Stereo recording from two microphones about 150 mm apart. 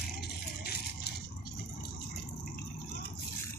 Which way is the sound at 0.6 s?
90° left.